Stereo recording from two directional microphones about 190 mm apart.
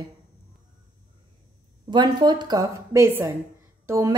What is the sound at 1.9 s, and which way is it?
Speech, 25° right (ahead or behind).